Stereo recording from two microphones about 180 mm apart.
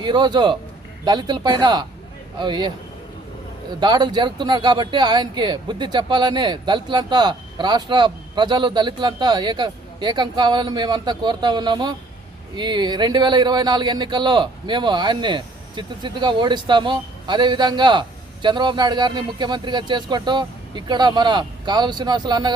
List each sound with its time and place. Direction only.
0.0 s speech: 25° right (ahead or behind)